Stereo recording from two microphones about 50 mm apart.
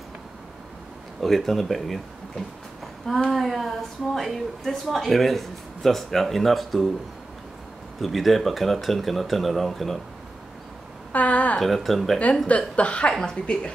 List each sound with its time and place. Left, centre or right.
1.2 s speech: centre
3.3 s speech: centre
8.0 s speech: centre
11.1 s a woman's voice: left
11.6 s speech: centre
12.4 s speech: left